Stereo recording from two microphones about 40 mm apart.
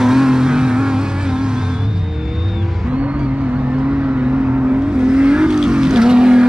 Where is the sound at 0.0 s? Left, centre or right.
Centre.